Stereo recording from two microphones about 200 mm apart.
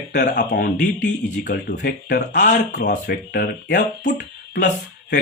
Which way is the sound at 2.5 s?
55° left (ahead or behind).